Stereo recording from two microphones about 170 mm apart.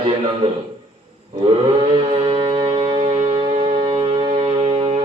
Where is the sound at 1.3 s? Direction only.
35° right (ahead or behind).